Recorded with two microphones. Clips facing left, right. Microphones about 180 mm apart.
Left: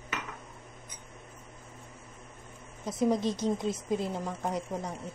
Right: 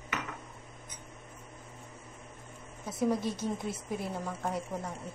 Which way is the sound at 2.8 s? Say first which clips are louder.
Left 3 dB; 20° left (ahead or behind).